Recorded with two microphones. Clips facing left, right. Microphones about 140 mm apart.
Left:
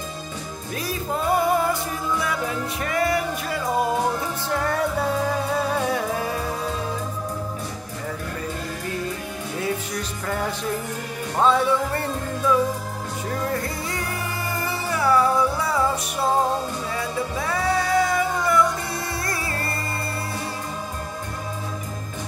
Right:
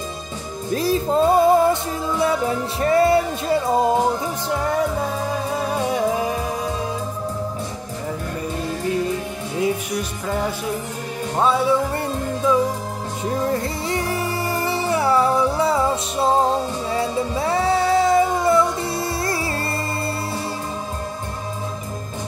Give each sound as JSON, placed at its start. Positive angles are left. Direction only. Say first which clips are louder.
{"t": 0.7, "sound": "music", "louder": "right 9 dB", "side_deg": -30}
{"t": 9.6, "sound": "music", "louder": "right 6 dB", "side_deg": -15}